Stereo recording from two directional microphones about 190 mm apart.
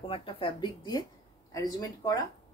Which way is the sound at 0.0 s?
30° left (ahead or behind).